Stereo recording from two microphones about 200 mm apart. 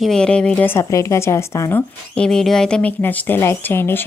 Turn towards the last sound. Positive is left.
turn(degrees=10)  # may be behind; listen again after turning